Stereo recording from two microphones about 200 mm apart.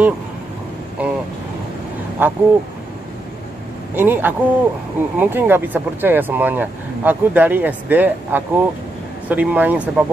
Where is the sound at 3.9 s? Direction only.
10° right (ahead or behind).